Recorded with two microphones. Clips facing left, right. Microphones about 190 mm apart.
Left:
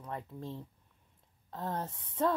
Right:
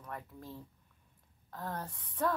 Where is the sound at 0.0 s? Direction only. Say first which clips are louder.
Left 4 dB; 25° left (ahead or behind).